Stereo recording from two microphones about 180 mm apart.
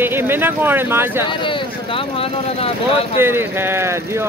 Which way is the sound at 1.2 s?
25° left (ahead or behind).